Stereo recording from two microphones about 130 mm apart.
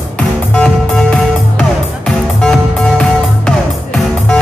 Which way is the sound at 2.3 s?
5° left (ahead or behind).